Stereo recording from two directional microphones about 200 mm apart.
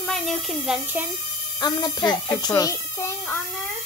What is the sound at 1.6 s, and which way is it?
Speech, 20° left (ahead or behind).